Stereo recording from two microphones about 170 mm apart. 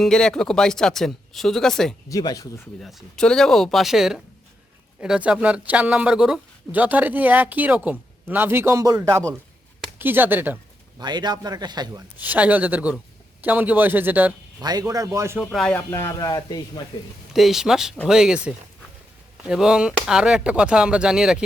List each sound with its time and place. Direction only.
0.0 s speech: 5° left (ahead or behind)
2.0 s speech: 20° left (ahead or behind)
2.8 s speech: 5° left (ahead or behind)
11.0 s a man's voice: 25° right (ahead or behind)
12.1 s speech: 10° right (ahead or behind)
14.6 s a man's voice: 25° right (ahead or behind)
15.4 s speech: centre (ahead or behind)
15.7 s speech: 15° left (ahead or behind)
17.3 s speech: centre (ahead or behind)